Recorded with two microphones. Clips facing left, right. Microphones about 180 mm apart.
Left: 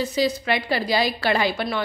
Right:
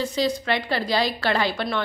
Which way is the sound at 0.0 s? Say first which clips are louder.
Left 1 dB; 10° left (ahead or behind).